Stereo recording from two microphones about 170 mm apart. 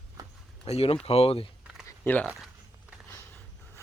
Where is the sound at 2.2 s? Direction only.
5° right (ahead or behind).